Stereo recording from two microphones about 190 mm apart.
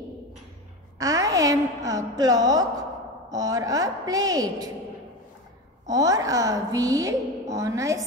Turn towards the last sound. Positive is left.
turn(degrees=-15)  # may be behind; listen again after turning